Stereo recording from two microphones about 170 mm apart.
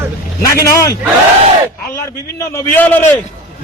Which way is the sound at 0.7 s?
20° left (ahead or behind).